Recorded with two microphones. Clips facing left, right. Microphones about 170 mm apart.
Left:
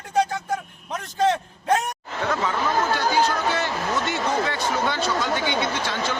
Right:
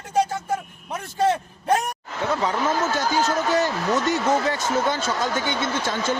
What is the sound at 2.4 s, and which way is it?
Speech, 45° right (ahead or behind).